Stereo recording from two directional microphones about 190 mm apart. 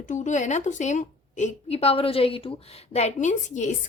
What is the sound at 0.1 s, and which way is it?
A woman's voice, 40° left (ahead or behind).